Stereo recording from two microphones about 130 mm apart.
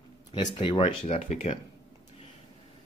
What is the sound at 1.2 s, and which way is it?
Speech, 65° left (ahead or behind).